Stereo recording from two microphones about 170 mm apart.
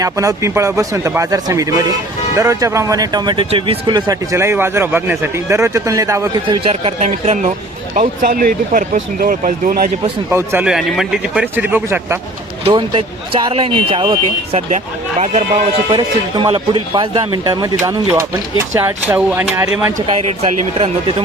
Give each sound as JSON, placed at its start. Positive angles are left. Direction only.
{"t": 0.0, "sound": "speech", "side_deg": -20}
{"t": 7.9, "sound": "speech", "side_deg": -50}
{"t": 10.2, "sound": "a man's voice", "side_deg": -10}
{"t": 12.6, "sound": "speech", "side_deg": -30}
{"t": 15.2, "sound": "speech", "side_deg": -40}
{"t": 15.9, "sound": "speech", "side_deg": -25}